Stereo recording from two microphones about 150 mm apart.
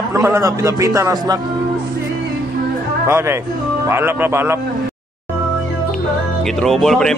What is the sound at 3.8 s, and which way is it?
Speech, 15° right (ahead or behind).